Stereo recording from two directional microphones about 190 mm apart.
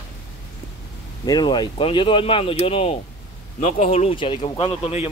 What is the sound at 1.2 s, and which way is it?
Speech, 20° left (ahead or behind).